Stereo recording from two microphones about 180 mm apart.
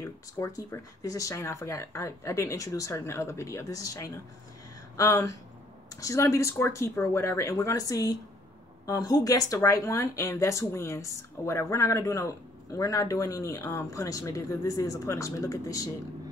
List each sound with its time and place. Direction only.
0.0 s speech: 15° left (ahead or behind)